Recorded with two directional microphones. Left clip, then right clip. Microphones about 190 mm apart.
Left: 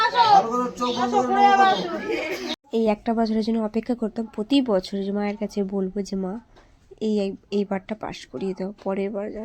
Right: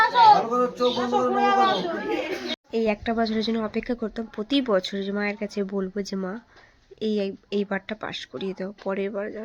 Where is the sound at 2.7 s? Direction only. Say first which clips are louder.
Left 2 dB; 15° left (ahead or behind).